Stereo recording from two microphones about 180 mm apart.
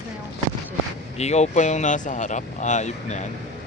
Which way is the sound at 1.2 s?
40° left (ahead or behind).